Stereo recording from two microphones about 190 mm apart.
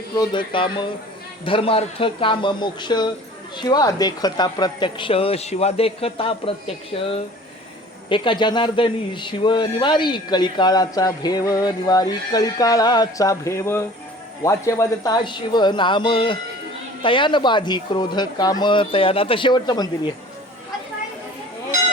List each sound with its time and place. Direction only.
0.2 s a man's voice: 25° left (ahead or behind)